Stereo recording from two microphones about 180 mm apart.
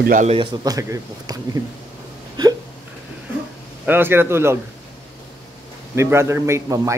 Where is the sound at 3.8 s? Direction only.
10° right (ahead or behind).